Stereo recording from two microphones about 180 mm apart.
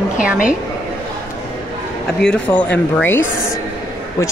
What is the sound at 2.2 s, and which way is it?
Speech, 5° left (ahead or behind).